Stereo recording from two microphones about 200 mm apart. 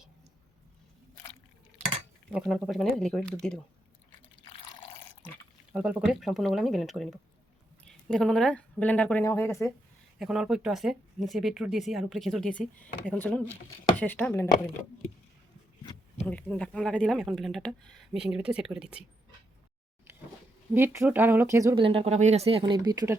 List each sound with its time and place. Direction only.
2.3 s speech: centre (ahead or behind)
4.5 s water: 25° left (ahead or behind)
5.7 s a woman's voice: 5° right (ahead or behind); by 9.7 s 15° left (ahead or behind)
10.2 s speech: centre (ahead or behind)
16.2 s speech: 5° left (ahead or behind)
20.7 s speech: 10° right (ahead or behind)
21.8 s speech: 25° right (ahead or behind)